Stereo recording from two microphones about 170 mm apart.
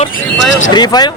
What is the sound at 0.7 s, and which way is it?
Speech, 25° left (ahead or behind).